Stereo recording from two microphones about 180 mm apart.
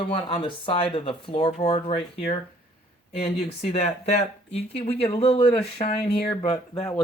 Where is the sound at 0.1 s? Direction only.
30° left (ahead or behind).